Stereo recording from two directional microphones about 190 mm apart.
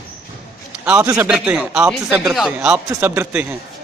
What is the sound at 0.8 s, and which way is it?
A man's voice, 15° right (ahead or behind).